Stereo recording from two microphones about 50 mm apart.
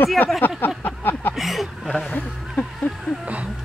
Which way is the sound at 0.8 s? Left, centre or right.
Left.